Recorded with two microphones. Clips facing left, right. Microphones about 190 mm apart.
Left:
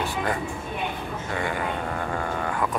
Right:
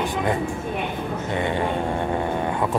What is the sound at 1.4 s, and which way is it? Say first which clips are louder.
Speech: right 4 dB; 25° right (ahead or behind).